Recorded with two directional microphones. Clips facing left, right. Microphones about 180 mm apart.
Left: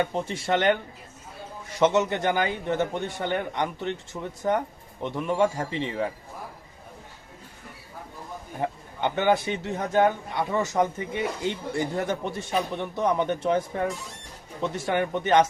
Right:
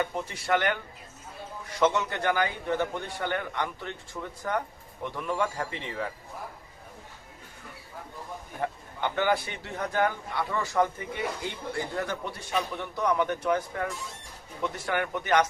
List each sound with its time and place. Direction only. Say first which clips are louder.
0.0 s speech: left 4 dB; 25° left (ahead or behind)
1.8 s speech: left 4 dB; 20° left (ahead or behind)
8.6 s speech: left 3 dB; 20° left (ahead or behind)